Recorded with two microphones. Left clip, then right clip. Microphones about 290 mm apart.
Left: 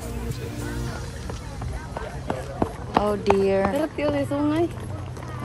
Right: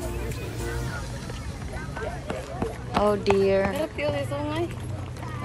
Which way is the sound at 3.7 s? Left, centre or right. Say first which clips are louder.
Left 3 dB; left.